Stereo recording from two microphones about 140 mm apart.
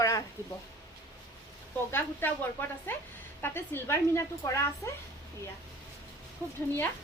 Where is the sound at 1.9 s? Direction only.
15° left (ahead or behind).